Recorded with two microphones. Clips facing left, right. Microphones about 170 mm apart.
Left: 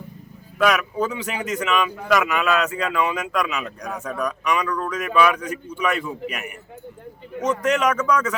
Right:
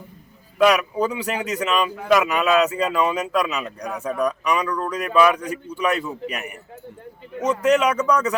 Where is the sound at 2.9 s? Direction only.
35° right (ahead or behind).